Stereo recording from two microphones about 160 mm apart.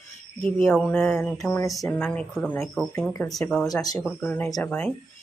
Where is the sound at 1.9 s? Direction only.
5° left (ahead or behind).